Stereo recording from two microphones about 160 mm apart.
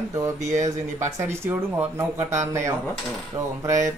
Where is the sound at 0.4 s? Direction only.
45° right (ahead or behind).